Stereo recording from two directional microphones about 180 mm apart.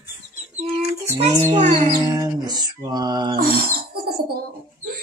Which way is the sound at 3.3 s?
55° right (ahead or behind).